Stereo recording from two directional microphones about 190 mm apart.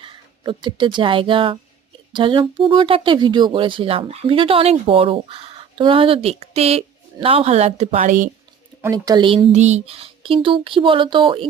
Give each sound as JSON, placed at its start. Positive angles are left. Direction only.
{"t": 0.0, "sound": "speech", "side_deg": -25}
{"t": 8.8, "sound": "speech", "side_deg": -20}